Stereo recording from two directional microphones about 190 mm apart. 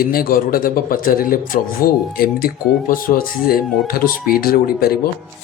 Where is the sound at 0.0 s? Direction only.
50° left (ahead or behind).